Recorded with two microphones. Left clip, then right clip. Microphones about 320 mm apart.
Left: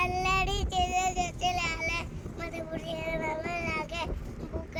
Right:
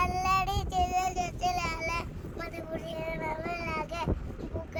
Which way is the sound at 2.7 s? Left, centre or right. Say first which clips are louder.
Left 1 dB; right.